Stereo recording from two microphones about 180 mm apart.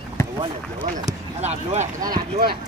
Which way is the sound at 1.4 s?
40° right (ahead or behind).